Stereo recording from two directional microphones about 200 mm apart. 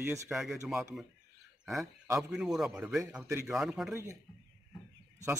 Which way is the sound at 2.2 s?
Centre (ahead or behind).